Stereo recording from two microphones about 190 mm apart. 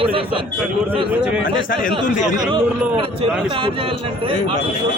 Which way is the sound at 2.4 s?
20° right (ahead or behind).